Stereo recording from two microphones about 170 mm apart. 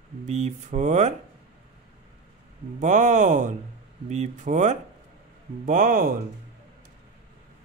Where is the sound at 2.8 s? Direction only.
45° right (ahead or behind).